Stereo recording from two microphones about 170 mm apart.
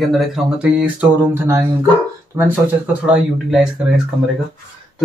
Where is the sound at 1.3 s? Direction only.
15° right (ahead or behind).